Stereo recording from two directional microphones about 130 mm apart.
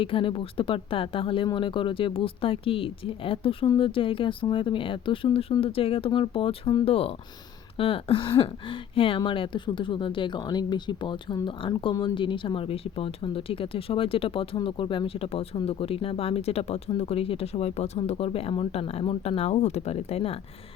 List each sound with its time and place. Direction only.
0.0 s speech: 45° left (ahead or behind)